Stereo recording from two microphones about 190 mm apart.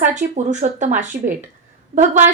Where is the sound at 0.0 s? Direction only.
40° right (ahead or behind).